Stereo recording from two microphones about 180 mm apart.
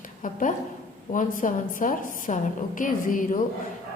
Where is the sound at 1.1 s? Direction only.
45° left (ahead or behind).